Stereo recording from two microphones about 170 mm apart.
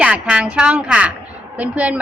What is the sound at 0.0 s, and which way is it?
A woman's voice, 5° right (ahead or behind).